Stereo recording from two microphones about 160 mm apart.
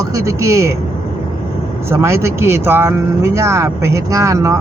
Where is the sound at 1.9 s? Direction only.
15° right (ahead or behind).